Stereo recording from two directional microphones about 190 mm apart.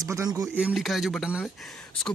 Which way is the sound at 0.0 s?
15° right (ahead or behind).